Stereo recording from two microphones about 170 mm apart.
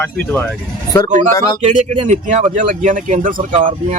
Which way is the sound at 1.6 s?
45° right (ahead or behind).